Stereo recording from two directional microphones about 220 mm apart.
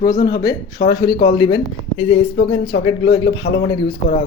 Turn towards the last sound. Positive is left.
turn(degrees=20)  # may be behind; listen again after turning